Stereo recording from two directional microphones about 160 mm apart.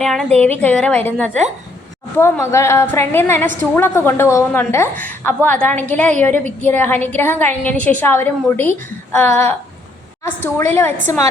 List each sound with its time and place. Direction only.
0.0 s a woman's voice: centre (ahead or behind)